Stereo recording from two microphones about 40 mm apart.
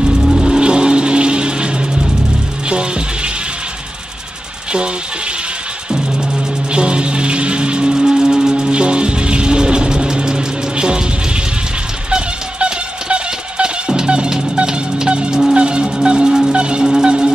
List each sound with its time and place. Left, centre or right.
0.4 s music: centre
5.9 s music: centre
12.1 s a sound: right
14.7 s music: right